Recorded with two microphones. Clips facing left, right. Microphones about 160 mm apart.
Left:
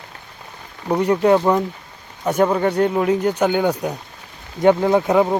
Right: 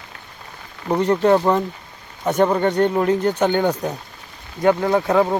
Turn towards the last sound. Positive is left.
turn(degrees=20)  # may be behind; listen again after turning